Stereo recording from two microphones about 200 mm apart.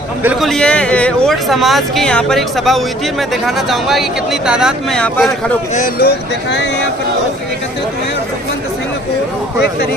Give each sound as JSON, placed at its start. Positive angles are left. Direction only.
{"t": 0.2, "sound": "a man's voice", "side_deg": -10}
{"t": 0.5, "sound": "speech", "side_deg": 5}
{"t": 5.7, "sound": "speech", "side_deg": 45}